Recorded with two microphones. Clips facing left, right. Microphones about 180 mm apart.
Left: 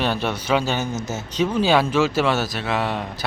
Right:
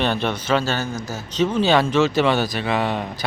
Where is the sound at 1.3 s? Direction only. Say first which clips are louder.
Right 1 dB; 10° left (ahead or behind).